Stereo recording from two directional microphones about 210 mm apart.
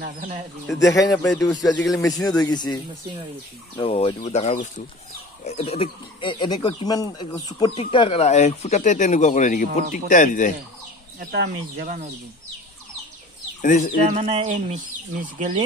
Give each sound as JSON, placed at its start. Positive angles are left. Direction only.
{"t": 0.0, "sound": "speech", "side_deg": -40}
{"t": 0.9, "sound": "speech", "side_deg": 15}
{"t": 11.1, "sound": "speech", "side_deg": -45}
{"t": 13.6, "sound": "speech", "side_deg": 40}
{"t": 14.1, "sound": "speech", "side_deg": -30}